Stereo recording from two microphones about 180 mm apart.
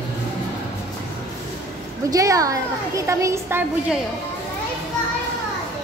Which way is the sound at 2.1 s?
20° right (ahead or behind).